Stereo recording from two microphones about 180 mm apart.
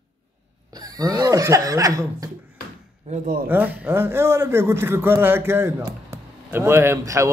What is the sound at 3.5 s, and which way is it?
Speech, 10° right (ahead or behind).